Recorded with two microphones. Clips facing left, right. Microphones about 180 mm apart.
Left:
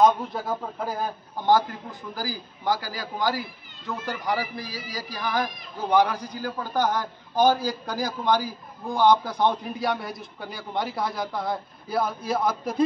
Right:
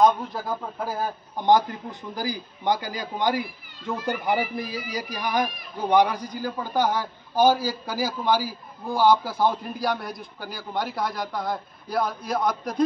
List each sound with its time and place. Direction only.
0.0 s a man's voice: centre (ahead or behind)
1.4 s a man's voice: 20° right (ahead or behind); by 12.8 s 5° left (ahead or behind)